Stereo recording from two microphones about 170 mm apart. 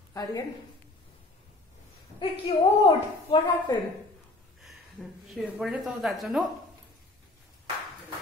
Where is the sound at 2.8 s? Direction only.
30° left (ahead or behind).